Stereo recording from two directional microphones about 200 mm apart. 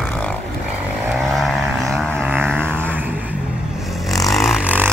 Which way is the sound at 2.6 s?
10° right (ahead or behind).